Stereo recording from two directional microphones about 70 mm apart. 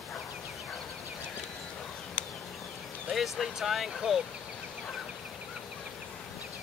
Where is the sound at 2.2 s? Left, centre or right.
Left.